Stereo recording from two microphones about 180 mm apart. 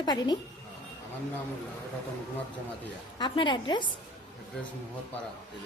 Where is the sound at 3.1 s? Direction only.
25° left (ahead or behind).